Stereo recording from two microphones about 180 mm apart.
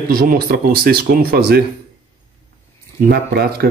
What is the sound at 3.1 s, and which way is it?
Speech, 60° right (ahead or behind).